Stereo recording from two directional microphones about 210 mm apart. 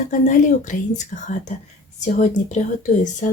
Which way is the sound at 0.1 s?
35° left (ahead or behind).